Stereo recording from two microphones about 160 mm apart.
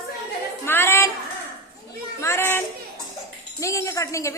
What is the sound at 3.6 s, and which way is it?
Speech, 20° left (ahead or behind).